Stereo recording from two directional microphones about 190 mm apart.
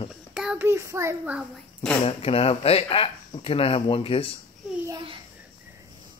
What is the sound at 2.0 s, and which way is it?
Speech, 30° left (ahead or behind).